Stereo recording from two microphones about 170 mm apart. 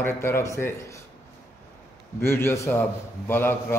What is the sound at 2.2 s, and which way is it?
A man's voice, 15° left (ahead or behind).